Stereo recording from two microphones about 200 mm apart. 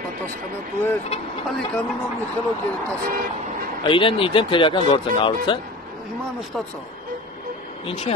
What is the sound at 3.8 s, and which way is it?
Speech, 25° left (ahead or behind).